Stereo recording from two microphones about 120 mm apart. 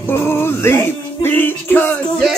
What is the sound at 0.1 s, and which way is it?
Music, 20° left (ahead or behind).